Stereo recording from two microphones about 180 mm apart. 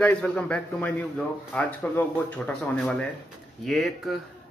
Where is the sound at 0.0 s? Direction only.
5° left (ahead or behind).